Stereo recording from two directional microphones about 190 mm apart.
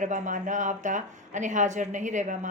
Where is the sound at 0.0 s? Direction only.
40° right (ahead or behind).